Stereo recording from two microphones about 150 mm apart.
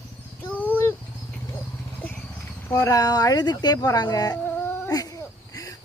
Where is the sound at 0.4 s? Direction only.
10° left (ahead or behind).